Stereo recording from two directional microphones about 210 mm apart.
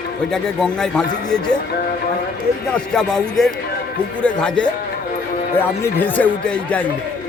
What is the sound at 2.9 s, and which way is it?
Speech, 5° left (ahead or behind).